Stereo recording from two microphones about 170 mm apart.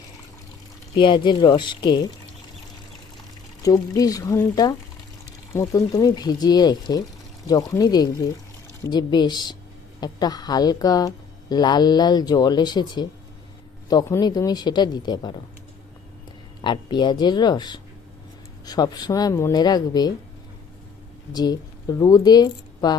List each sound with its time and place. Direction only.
0.9 s a woman's voice: 30° left (ahead or behind)
3.6 s a woman's voice: 20° left (ahead or behind)
16.6 s a woman's voice: 25° left (ahead or behind)
21.3 s speech: 25° left (ahead or behind)